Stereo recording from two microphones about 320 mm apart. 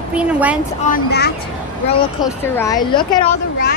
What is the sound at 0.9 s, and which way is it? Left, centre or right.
Speech, left.